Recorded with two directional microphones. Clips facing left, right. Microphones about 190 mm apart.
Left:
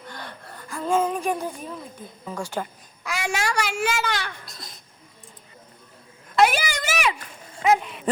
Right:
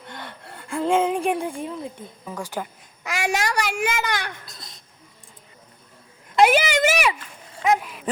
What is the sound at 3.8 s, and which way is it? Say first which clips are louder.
Speech: even; 15° right (ahead or behind).